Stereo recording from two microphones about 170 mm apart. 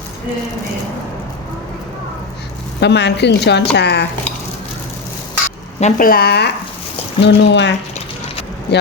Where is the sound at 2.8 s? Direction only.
90° left.